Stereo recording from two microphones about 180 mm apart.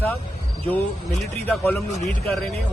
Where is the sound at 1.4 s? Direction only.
10° left (ahead or behind).